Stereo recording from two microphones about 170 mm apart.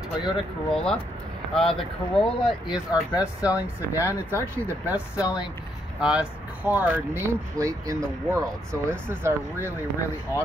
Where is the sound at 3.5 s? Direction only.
10° right (ahead or behind).